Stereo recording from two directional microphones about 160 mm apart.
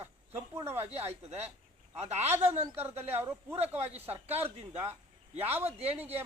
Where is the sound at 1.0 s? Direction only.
40° right (ahead or behind).